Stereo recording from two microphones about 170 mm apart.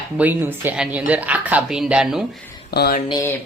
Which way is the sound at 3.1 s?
20° left (ahead or behind).